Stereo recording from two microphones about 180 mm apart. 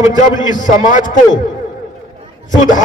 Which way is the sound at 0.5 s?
45° left (ahead or behind).